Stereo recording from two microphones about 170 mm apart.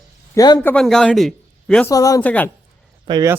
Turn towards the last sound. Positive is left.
turn(degrees=-25)  # may be behind; listen again after turning